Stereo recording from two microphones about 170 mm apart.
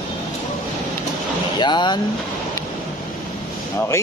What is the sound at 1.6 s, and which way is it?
Speech, 25° left (ahead or behind).